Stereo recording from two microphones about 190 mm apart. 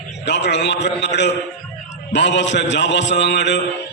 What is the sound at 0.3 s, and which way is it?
A man's voice, 65° left (ahead or behind).